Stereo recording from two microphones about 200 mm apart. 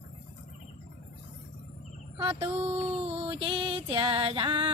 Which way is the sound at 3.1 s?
25° right (ahead or behind).